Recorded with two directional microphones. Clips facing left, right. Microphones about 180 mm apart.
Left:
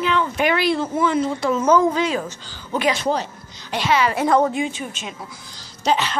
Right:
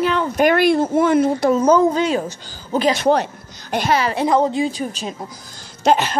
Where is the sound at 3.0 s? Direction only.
60° right (ahead or behind); by 4.2 s 35° right (ahead or behind).